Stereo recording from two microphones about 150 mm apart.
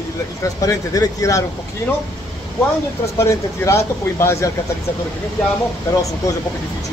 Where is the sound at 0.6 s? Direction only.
25° left (ahead or behind).